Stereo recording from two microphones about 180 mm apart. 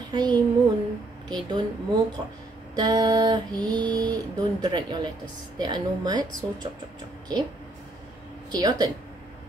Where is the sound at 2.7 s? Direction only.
20° right (ahead or behind).